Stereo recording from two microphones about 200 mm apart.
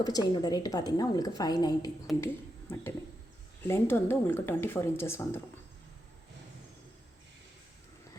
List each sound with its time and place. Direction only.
0.0 s a woman's voice: 20° left (ahead or behind)